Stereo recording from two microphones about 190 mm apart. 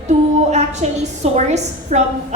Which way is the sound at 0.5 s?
35° right (ahead or behind).